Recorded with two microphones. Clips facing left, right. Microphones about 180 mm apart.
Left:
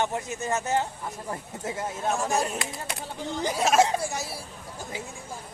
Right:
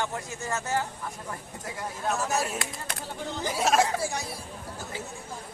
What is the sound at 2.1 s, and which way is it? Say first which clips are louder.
Speech: left 1 dB; centre (ahead or behind).